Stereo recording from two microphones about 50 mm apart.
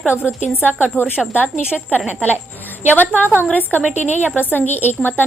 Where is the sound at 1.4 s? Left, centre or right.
Right.